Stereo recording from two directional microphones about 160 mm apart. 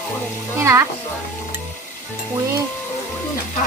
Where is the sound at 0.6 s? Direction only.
15° right (ahead or behind).